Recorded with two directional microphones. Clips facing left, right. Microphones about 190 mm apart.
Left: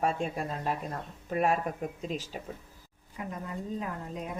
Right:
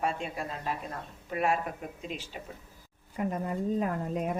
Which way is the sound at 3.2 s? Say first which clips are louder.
Right 6 dB; 55° right (ahead or behind).